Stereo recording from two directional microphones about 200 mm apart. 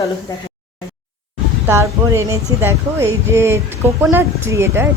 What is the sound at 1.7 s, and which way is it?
Speech, 15° right (ahead or behind).